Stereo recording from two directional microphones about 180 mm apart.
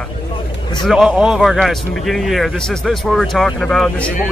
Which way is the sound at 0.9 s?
5° right (ahead or behind).